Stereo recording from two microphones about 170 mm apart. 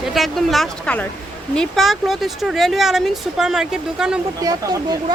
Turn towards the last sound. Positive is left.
turn(degrees=-20)  # may be behind; listen again after turning